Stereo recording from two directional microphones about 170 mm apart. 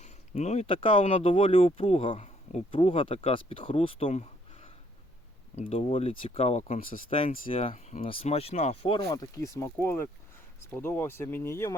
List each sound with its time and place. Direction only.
0.0 s speech: 40° left (ahead or behind)
7.4 s speech: 35° left (ahead or behind); by 11.7 s 15° left (ahead or behind)